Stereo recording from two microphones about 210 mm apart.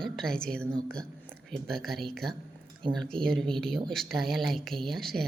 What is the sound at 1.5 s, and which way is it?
A woman's voice, centre (ahead or behind).